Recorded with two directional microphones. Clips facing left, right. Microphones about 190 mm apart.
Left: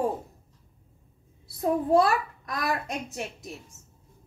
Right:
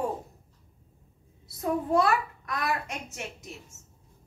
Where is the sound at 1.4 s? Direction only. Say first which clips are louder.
Left 4 dB; 35° left (ahead or behind).